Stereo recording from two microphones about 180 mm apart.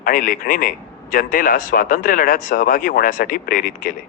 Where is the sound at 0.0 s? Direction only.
50° left (ahead or behind).